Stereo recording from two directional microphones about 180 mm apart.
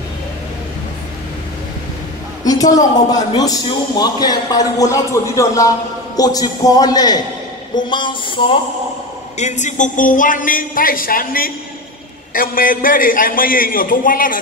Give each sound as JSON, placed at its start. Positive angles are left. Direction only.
{"t": 2.4, "sound": "a woman's voice", "side_deg": 20}
{"t": 9.4, "sound": "a man's voice", "side_deg": 40}